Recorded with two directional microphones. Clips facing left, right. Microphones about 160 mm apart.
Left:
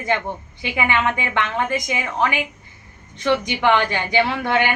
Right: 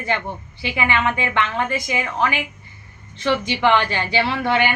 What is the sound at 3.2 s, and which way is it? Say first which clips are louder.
A woman's voice: even; 15° left (ahead or behind).